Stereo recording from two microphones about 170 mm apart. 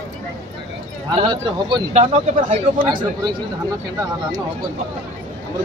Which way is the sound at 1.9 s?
40° right (ahead or behind).